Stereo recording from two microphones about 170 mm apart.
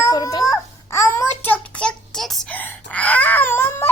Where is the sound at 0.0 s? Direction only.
20° left (ahead or behind).